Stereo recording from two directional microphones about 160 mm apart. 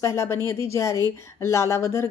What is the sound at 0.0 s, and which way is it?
A woman's voice, 15° left (ahead or behind).